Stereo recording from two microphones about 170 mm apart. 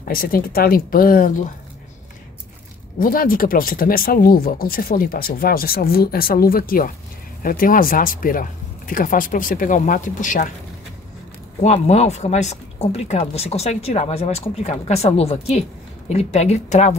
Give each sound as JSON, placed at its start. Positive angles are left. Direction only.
{"t": 0.0, "sound": "speech", "side_deg": 60}
{"t": 3.0, "sound": "speech", "side_deg": 55}
{"t": 11.6, "sound": "speech", "side_deg": 40}